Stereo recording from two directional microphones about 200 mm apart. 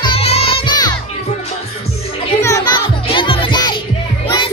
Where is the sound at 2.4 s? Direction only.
20° left (ahead or behind).